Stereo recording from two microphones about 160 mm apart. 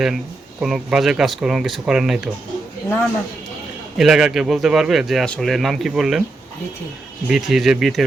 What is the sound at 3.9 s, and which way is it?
Speech, 5° right (ahead or behind).